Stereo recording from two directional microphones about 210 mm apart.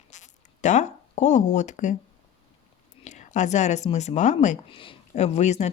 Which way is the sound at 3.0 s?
35° left (ahead or behind).